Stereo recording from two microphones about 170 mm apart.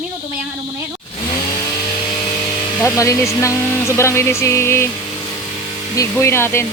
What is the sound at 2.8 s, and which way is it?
Speech, 20° left (ahead or behind).